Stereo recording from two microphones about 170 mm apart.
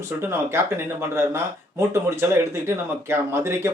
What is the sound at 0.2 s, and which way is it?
Speech, 15° right (ahead or behind).